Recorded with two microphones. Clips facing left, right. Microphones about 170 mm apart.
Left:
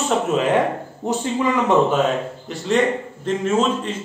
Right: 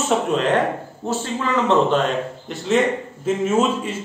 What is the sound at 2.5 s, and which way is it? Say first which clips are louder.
A man's voice: even; centre (ahead or behind).